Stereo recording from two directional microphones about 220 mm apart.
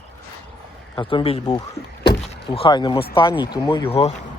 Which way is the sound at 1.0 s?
25° left (ahead or behind).